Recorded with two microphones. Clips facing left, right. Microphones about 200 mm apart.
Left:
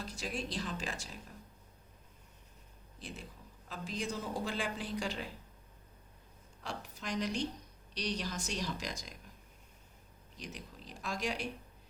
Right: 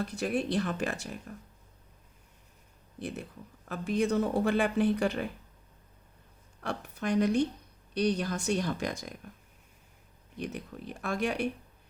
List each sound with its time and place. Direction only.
0.0 s a woman's voice: 60° right (ahead or behind)
3.7 s a woman's voice: 60° right (ahead or behind)
6.6 s a woman's voice: 60° right (ahead or behind)
10.3 s a woman's voice: 60° right (ahead or behind)